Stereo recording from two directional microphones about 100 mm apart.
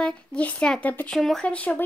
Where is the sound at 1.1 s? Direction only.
5° left (ahead or behind).